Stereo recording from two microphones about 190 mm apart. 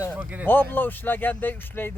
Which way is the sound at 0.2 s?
10° right (ahead or behind).